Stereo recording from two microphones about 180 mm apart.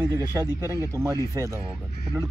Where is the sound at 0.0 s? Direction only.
15° right (ahead or behind).